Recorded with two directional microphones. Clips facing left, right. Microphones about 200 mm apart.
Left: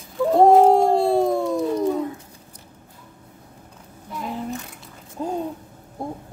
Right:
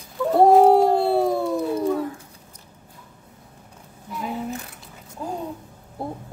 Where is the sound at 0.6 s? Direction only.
5° right (ahead or behind).